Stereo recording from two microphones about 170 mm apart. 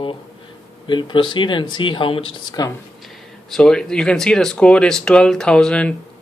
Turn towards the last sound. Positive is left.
turn(degrees=5)  # may be behind; listen again after turning